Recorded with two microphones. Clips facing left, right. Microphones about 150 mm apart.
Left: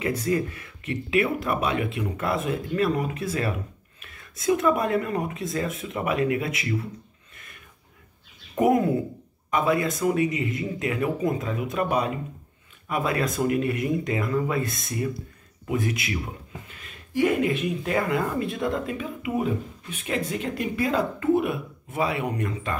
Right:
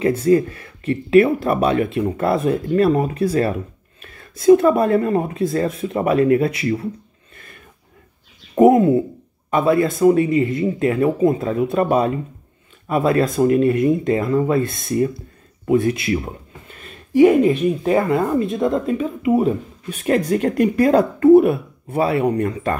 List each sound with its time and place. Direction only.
0.0 s speech: 30° right (ahead or behind)
8.5 s speech: 25° right (ahead or behind)
17.2 s speech: 45° right (ahead or behind)
17.8 s speech: 30° right (ahead or behind)